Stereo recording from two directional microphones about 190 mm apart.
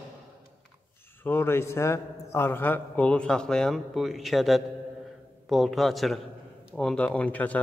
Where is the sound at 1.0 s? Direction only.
10° left (ahead or behind).